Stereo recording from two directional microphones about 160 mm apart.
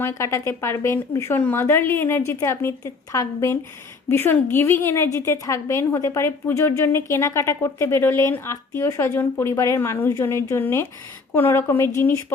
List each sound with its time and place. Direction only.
0.0 s a woman's voice: 20° left (ahead or behind)